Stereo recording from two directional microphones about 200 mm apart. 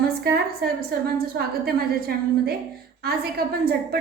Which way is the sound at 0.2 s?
55° right (ahead or behind).